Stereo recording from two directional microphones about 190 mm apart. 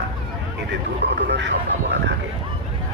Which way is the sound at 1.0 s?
65° right (ahead or behind).